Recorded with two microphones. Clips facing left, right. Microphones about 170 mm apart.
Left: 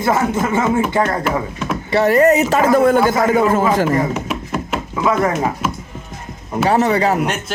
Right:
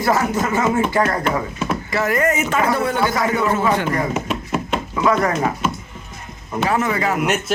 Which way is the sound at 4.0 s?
Centre (ahead or behind).